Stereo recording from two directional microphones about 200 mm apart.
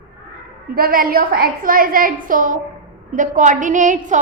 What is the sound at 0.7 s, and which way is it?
A woman's voice, 45° right (ahead or behind).